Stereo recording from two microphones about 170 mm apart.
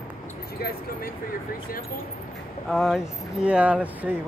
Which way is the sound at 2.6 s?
Centre (ahead or behind).